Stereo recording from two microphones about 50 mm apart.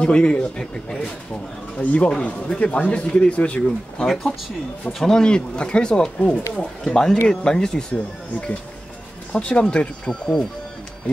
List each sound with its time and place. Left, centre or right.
0.0 s speech: left
1.8 s speech: left
2.0 s speech: centre
4.0 s speech: centre
7.9 s speech: left